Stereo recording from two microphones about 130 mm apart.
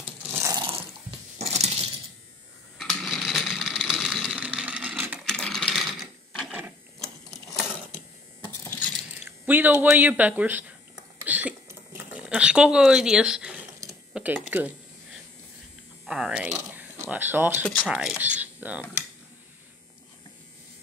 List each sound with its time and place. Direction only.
0.2 s water: 15° right (ahead or behind)
1.4 s coin: 55° right (ahead or behind)
2.8 s a sound: centre (ahead or behind)
5.2 s sewing machine: 5° left (ahead or behind)
8.6 s biting: 15° left (ahead or behind)
9.2 s speech: 15° right (ahead or behind)
11.2 s a sound: 10° right (ahead or behind)
12.1 s speech: 10° right (ahead or behind)
14.1 s a sound: 15° right (ahead or behind)
16.1 s speech: 5° right (ahead or behind)
16.5 s speech: 15° right (ahead or behind)